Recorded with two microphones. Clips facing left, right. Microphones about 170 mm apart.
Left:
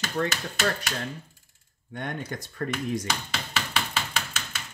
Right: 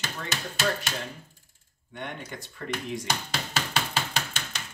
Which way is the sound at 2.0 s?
45° left (ahead or behind).